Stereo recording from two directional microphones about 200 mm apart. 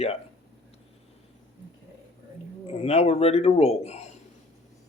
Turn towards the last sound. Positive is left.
turn(degrees=30)  # may be behind; listen again after turning